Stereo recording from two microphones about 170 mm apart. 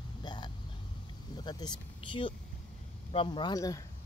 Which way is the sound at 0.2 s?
25° left (ahead or behind).